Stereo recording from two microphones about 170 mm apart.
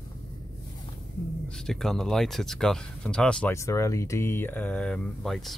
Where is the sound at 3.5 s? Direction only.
15° left (ahead or behind).